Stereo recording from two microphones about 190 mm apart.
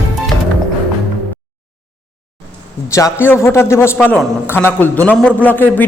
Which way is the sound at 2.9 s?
15° left (ahead or behind).